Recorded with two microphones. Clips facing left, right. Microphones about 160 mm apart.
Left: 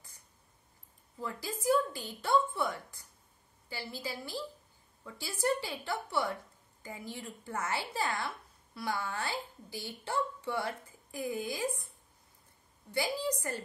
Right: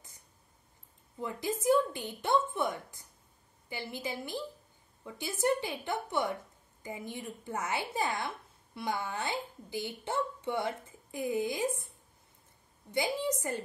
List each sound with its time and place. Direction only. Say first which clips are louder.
1.2 s speech: right 3 dB; 20° right (ahead or behind)
12.9 s speech: right 2 dB; 20° right (ahead or behind)